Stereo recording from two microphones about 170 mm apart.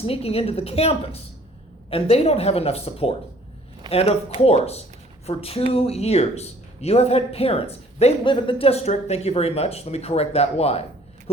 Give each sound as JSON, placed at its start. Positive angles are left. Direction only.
{"t": 0.0, "sound": "speech", "side_deg": 35}